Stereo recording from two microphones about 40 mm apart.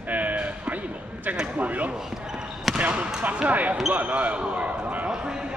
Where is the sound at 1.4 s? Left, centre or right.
Right.